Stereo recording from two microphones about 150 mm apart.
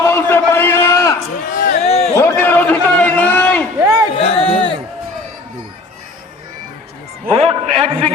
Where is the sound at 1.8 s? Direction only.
45° left (ahead or behind).